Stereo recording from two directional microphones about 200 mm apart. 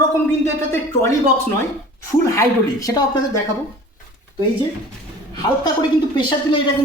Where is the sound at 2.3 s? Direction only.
15° left (ahead or behind).